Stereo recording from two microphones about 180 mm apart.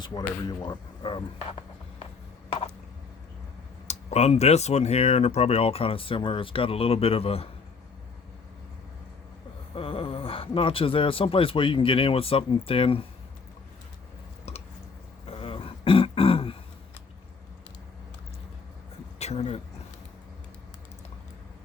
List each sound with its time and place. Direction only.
0.4 s speech: 25° left (ahead or behind)
3.8 s speech: 35° left (ahead or behind)
9.7 s speech: 30° left (ahead or behind)
15.3 s throat clearing: 30° left (ahead or behind)
19.2 s a sound: 35° left (ahead or behind)